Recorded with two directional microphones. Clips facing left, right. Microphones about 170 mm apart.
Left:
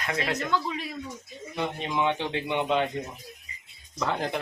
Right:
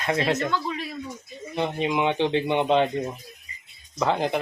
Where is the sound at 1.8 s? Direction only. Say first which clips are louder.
Right 5 dB; 15° right (ahead or behind).